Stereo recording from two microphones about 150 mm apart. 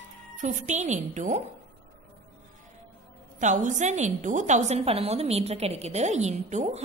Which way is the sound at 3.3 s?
55° right (ahead or behind).